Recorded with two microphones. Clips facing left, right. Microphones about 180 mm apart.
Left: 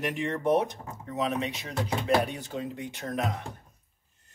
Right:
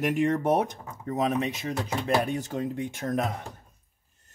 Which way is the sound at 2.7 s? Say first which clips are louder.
Right 5 dB; 50° right (ahead or behind).